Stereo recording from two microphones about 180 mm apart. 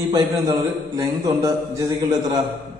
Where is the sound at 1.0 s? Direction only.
15° right (ahead or behind).